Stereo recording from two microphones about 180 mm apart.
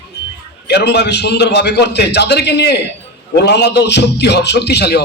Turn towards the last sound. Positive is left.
turn(degrees=65)  # may be behind; listen again after turning